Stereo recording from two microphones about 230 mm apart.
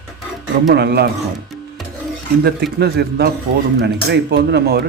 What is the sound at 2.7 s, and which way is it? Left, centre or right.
Speech, right.